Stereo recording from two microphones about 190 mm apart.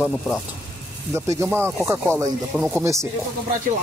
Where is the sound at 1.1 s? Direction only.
15° right (ahead or behind).